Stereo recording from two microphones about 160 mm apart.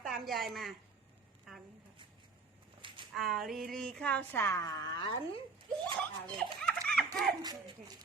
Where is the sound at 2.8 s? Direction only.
30° right (ahead or behind).